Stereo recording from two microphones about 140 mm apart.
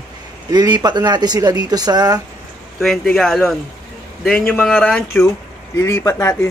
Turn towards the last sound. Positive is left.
turn(degrees=20)  # may be behind; listen again after turning